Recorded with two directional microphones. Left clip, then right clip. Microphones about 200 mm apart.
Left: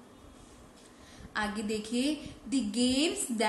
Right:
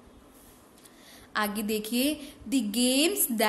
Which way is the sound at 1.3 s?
50° right (ahead or behind).